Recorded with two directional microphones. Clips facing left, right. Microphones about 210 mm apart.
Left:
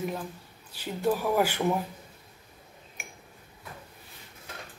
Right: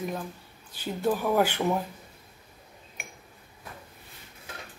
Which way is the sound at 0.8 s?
10° left (ahead or behind).